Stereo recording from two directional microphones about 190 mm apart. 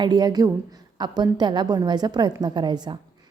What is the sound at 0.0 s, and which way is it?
A woman's voice, 20° right (ahead or behind).